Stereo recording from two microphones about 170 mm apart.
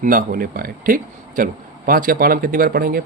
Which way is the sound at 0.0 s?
55° right (ahead or behind).